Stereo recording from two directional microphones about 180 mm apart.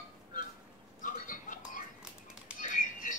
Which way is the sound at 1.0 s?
45° left (ahead or behind).